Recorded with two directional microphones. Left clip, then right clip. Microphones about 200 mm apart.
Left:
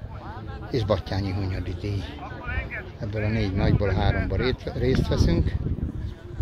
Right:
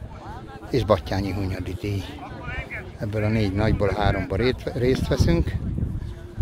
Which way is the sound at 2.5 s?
10° right (ahead or behind).